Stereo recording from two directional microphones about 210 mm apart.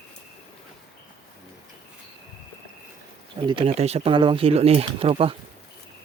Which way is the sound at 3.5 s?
25° right (ahead or behind).